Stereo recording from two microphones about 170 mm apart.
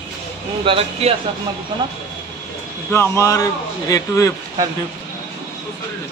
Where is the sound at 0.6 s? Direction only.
35° right (ahead or behind).